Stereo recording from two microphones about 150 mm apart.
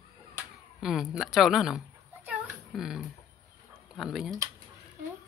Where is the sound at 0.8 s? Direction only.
5° right (ahead or behind).